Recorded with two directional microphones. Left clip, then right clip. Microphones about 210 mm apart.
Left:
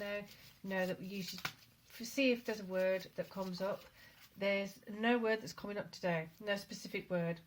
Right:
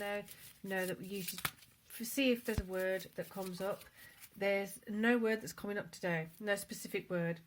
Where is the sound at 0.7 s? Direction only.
40° right (ahead or behind).